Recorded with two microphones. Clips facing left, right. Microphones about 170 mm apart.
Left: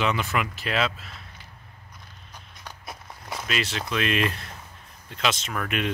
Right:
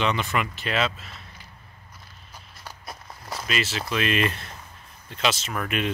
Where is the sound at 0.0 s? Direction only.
5° left (ahead or behind).